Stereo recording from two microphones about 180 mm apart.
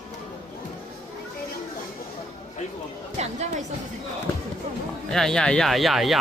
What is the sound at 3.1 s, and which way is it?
Music, 40° right (ahead or behind).